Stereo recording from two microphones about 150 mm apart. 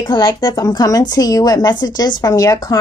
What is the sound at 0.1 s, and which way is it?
Speech, 25° left (ahead or behind).